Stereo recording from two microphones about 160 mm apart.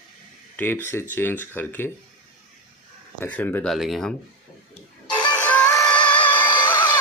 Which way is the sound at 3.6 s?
Centre (ahead or behind).